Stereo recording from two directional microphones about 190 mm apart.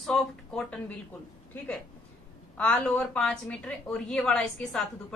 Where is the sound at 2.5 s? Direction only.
5° left (ahead or behind).